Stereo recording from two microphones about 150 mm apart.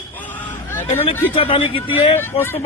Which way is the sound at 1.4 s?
35° left (ahead or behind).